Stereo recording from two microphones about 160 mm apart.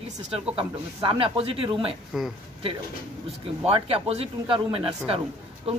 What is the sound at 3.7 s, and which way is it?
Speech, 35° right (ahead or behind).